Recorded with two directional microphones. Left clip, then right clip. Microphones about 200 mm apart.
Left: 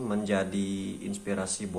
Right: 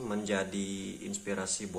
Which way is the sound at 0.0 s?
Centre (ahead or behind).